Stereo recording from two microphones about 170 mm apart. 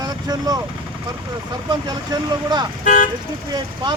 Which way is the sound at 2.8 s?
50° left (ahead or behind).